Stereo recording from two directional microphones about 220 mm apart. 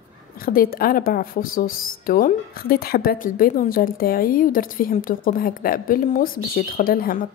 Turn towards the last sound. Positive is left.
turn(degrees=40)  # may be behind; listen again after turning